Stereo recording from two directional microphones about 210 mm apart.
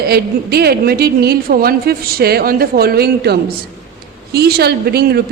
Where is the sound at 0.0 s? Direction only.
50° right (ahead or behind).